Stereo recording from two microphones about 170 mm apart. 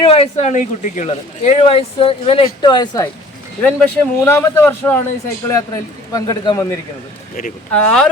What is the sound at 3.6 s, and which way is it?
A man's voice, 10° left (ahead or behind).